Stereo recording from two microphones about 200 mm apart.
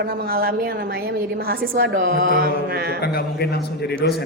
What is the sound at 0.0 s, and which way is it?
A woman's voice, 50° right (ahead or behind).